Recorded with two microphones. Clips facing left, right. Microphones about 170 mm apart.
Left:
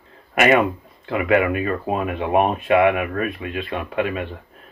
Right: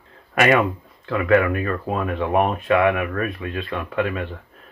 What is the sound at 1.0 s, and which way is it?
Speech, 20° left (ahead or behind).